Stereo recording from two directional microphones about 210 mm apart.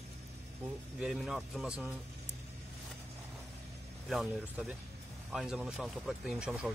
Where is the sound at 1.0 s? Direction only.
Centre (ahead or behind).